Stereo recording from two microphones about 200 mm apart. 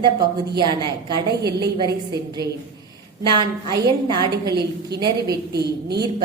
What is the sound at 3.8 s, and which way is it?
Speech, 20° right (ahead or behind).